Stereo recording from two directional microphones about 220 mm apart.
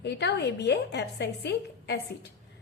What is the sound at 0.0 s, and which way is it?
A woman's voice, 50° left (ahead or behind).